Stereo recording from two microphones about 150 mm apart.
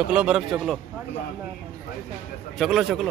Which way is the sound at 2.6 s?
Centre (ahead or behind).